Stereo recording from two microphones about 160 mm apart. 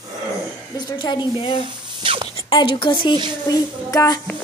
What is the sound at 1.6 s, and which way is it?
Drip, 30° right (ahead or behind).